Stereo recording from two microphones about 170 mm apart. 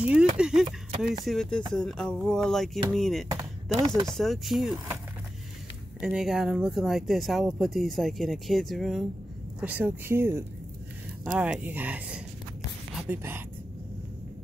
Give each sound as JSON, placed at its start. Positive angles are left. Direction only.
{"t": 0.0, "sound": "a sound", "side_deg": -5}
{"t": 1.2, "sound": "speech", "side_deg": 0}
{"t": 3.8, "sound": "speech", "side_deg": -20}
{"t": 4.1, "sound": "speech", "side_deg": 0}
{"t": 5.9, "sound": "speech", "side_deg": 0}